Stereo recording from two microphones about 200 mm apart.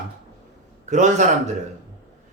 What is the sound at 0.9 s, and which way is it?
Speech, 40° right (ahead or behind).